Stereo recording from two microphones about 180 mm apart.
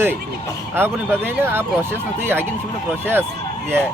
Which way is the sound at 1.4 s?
15° right (ahead or behind).